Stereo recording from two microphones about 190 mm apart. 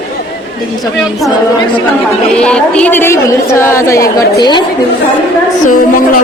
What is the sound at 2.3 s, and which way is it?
A woman's voice, 5° left (ahead or behind).